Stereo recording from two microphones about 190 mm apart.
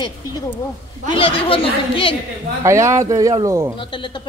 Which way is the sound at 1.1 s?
30° left (ahead or behind).